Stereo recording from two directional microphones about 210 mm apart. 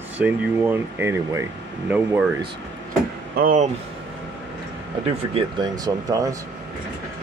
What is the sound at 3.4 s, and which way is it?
Speech, 40° right (ahead or behind).